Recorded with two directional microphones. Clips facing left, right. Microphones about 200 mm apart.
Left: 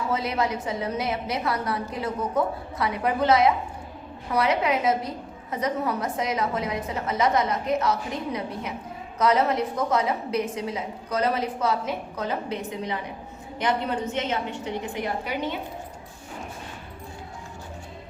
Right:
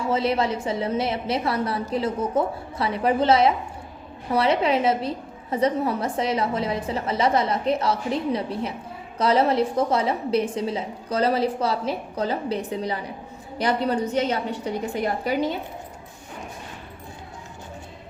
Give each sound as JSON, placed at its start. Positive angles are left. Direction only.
{"t": 0.1, "sound": "a woman's voice", "side_deg": -30}